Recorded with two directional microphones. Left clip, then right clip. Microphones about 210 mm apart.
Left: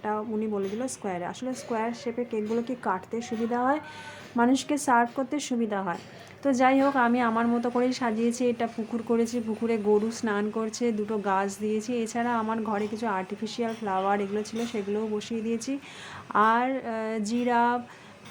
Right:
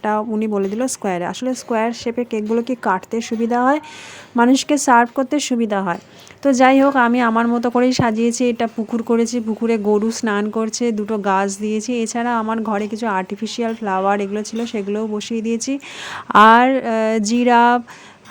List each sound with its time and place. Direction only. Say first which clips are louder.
0.0 s a woman's voice: right 10 dB; 45° right (ahead or behind)